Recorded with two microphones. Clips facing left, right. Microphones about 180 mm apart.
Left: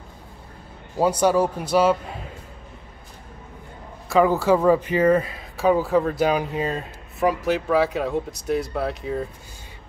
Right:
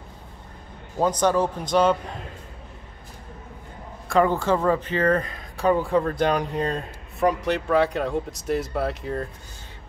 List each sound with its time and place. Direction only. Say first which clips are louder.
0.9 s speech: left 2 dB; 10° left (ahead or behind)
4.1 s speech: left 3 dB; 5° left (ahead or behind)